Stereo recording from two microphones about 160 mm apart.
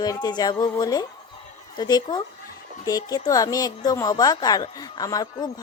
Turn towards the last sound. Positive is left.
turn(degrees=25)  # may be behind; listen again after turning